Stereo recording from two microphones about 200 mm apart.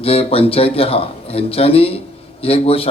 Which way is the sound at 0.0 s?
30° left (ahead or behind).